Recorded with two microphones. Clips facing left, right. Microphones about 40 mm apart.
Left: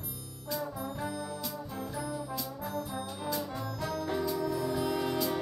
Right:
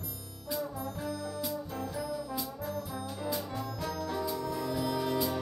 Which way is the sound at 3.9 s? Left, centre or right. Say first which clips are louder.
Left 3 dB; centre.